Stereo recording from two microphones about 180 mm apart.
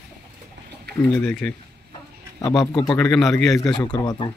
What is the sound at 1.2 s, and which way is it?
Speech, 5° left (ahead or behind).